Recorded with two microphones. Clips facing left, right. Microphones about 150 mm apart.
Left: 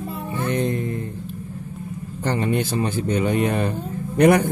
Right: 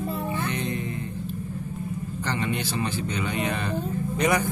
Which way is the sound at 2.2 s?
45° left (ahead or behind).